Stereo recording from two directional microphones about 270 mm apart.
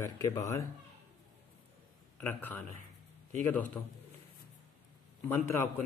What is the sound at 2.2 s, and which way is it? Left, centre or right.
Speech, centre.